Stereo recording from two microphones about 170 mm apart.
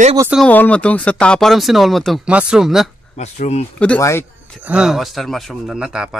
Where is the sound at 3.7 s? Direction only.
10° left (ahead or behind).